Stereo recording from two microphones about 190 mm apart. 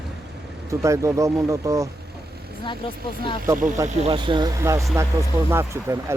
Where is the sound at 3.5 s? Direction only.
45° right (ahead or behind).